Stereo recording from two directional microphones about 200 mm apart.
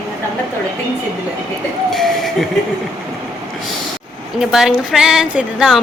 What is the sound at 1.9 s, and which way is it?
Speech, centre (ahead or behind).